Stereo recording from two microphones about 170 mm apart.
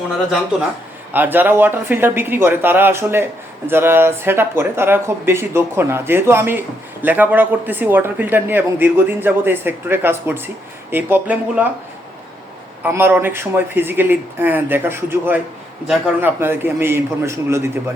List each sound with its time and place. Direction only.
1.1 s speech: 10° right (ahead or behind)
12.8 s speech: 15° right (ahead or behind)